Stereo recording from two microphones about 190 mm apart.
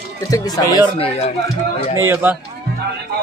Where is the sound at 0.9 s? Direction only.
30° left (ahead or behind).